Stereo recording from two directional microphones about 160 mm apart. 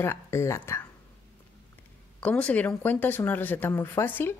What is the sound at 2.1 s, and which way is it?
Speech, 10° left (ahead or behind).